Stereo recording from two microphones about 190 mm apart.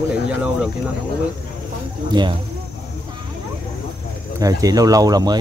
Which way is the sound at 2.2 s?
25° right (ahead or behind).